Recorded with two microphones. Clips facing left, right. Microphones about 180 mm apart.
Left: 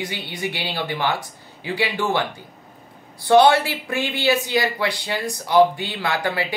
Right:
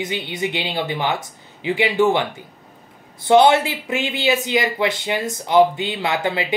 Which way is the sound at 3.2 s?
20° right (ahead or behind).